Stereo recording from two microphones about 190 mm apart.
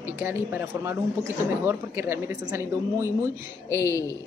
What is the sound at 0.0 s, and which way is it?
A woman's voice, 10° right (ahead or behind).